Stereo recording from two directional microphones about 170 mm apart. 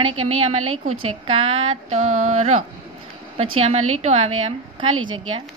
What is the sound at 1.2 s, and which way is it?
A woman's voice, 40° right (ahead or behind).